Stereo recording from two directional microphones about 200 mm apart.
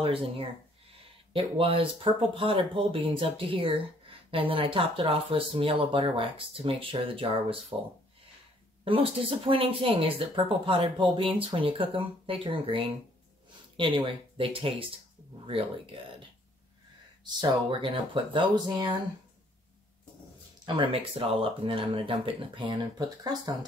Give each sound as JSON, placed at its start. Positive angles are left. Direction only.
{"t": 0.0, "sound": "speech", "side_deg": -25}
{"t": 9.5, "sound": "speech", "side_deg": -25}
{"t": 17.2, "sound": "speech", "side_deg": -20}
{"t": 20.6, "sound": "speech", "side_deg": -25}